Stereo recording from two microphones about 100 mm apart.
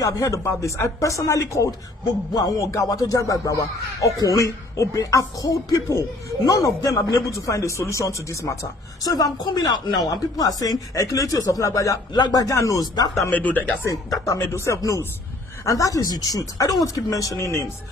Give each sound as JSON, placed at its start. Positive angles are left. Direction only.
{"t": 0.0, "sound": "speech", "side_deg": 35}
{"t": 13.3, "sound": "speech", "side_deg": 15}
{"t": 13.8, "sound": "speech", "side_deg": 30}